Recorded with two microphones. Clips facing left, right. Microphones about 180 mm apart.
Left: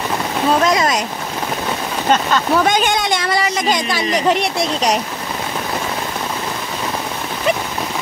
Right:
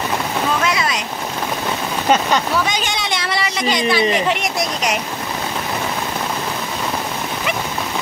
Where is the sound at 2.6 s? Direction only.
50° left (ahead or behind); by 4.9 s 35° left (ahead or behind).